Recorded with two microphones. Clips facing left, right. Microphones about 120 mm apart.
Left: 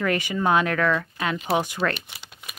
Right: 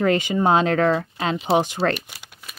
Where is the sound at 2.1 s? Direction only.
10° right (ahead or behind).